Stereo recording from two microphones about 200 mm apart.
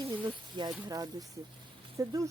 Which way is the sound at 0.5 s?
20° right (ahead or behind).